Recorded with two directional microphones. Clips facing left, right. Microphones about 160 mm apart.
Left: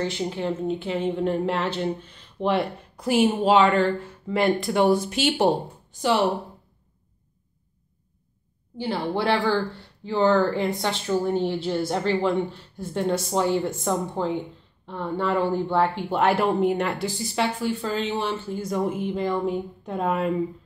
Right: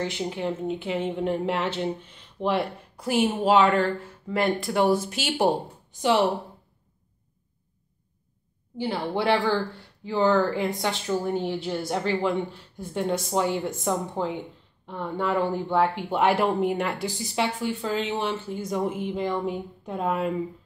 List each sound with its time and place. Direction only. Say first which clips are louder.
0.0 s speech: left 2 dB; 10° right (ahead or behind)
2.4 s speech: left 2 dB; 5° right (ahead or behind)
8.7 s speech: left 1 dB; 15° right (ahead or behind)